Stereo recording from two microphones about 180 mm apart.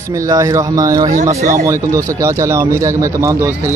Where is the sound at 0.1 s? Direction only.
20° right (ahead or behind).